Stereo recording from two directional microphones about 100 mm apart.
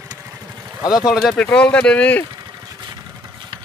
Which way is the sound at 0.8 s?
5° right (ahead or behind).